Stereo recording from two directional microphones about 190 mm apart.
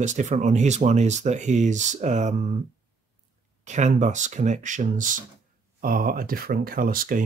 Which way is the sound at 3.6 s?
40° right (ahead or behind).